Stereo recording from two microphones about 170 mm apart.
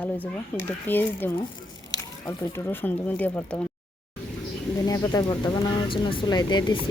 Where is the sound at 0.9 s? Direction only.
10° left (ahead or behind).